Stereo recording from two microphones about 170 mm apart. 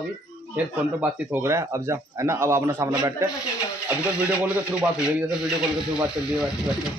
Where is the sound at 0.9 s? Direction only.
10° right (ahead or behind).